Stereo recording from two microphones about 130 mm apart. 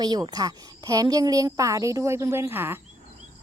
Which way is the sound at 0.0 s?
30° right (ahead or behind).